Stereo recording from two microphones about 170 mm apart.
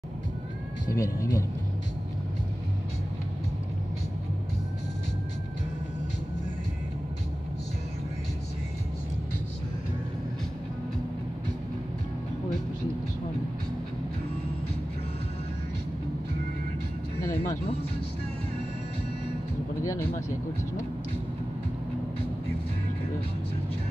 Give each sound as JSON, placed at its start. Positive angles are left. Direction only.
{"t": 0.9, "sound": "speech", "side_deg": 20}
{"t": 19.8, "sound": "vehicle", "side_deg": 20}